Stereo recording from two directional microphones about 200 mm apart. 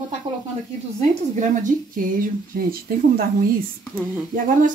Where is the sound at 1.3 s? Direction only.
40° right (ahead or behind).